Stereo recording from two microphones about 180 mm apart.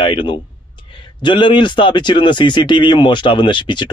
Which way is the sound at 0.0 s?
25° left (ahead or behind).